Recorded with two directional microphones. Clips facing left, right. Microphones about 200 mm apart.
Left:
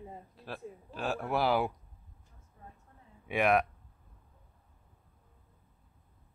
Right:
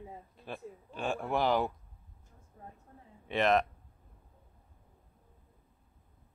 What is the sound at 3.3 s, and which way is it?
Speech, 10° left (ahead or behind).